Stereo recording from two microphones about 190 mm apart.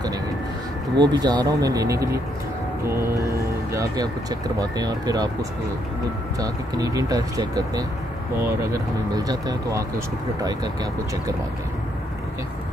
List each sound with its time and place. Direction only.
0.9 s speech: 20° right (ahead or behind)
6.4 s speech: 20° right (ahead or behind)